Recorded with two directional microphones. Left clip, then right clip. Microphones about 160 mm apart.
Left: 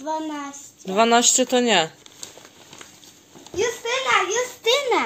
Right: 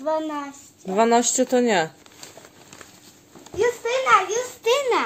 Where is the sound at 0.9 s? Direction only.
15° right (ahead or behind).